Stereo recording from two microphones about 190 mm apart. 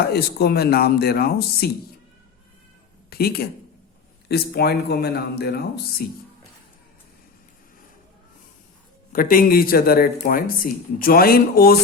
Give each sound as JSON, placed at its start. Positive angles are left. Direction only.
{"t": 0.1, "sound": "speech", "side_deg": 55}
{"t": 3.1, "sound": "speech", "side_deg": 55}
{"t": 9.1, "sound": "speech", "side_deg": 45}